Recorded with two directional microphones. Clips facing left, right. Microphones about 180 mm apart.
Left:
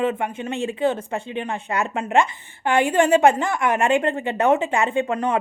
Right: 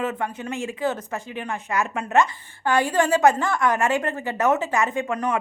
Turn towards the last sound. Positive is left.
turn(degrees=25)  # may be behind; listen again after turning